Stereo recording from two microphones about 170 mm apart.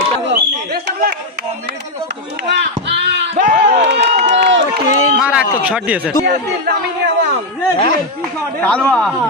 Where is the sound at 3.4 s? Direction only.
60° right (ahead or behind); by 4.1 s 85° right.